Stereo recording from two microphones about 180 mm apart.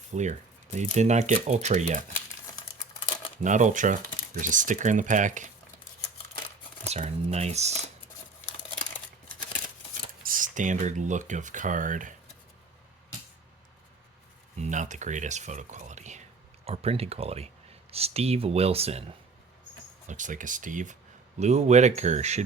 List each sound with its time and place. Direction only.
0.1 s speech: 40° right (ahead or behind)
3.4 s speech: 45° right (ahead or behind)
6.8 s speech: 35° right (ahead or behind)
10.2 s speech: 50° right (ahead or behind)
14.6 s speech: 40° right (ahead or behind)
20.1 s speech: 45° right (ahead or behind)